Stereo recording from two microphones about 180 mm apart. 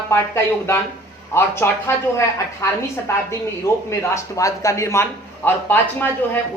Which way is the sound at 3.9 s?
15° left (ahead or behind).